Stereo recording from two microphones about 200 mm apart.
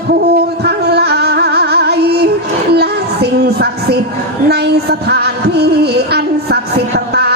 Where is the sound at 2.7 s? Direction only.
55° right (ahead or behind).